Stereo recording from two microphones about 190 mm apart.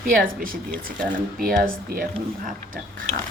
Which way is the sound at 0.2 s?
50° right (ahead or behind).